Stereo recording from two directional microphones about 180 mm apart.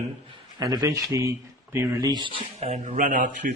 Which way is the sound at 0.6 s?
20° right (ahead or behind).